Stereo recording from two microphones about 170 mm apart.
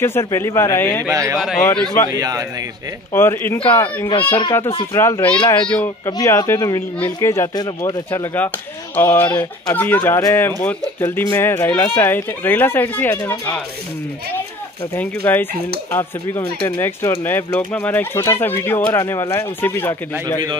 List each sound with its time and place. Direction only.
0.0 s speech: 15° left (ahead or behind)
1.0 s speech: 20° right (ahead or behind)
1.6 s speech: 10° left (ahead or behind)
2.0 s speech: 20° right (ahead or behind)
3.1 s speech: 15° left (ahead or behind)
4.9 s speech: 15° left (ahead or behind)
15.0 s speech: 10° left (ahead or behind)